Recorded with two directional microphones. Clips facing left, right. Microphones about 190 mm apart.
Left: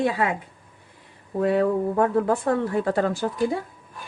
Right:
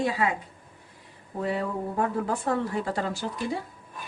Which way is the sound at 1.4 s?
65° left (ahead or behind).